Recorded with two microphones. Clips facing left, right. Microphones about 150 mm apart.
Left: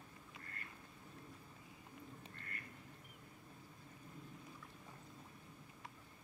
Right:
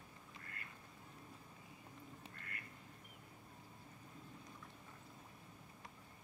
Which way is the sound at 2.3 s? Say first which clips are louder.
Left 1 dB; 35° left (ahead or behind).